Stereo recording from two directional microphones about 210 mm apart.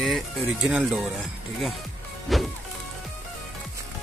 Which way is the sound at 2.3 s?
Centre (ahead or behind).